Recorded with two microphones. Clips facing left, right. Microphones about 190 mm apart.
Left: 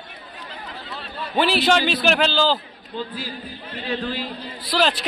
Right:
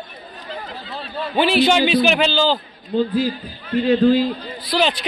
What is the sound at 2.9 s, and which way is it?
A man's voice, 45° right (ahead or behind).